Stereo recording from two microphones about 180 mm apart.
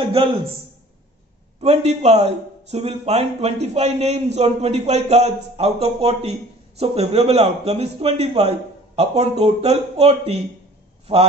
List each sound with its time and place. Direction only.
0.1 s a man's voice: 30° right (ahead or behind)
1.6 s a man's voice: 35° right (ahead or behind)